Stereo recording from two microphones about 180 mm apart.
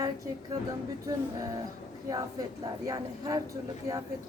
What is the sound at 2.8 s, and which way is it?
Speech, 20° right (ahead or behind).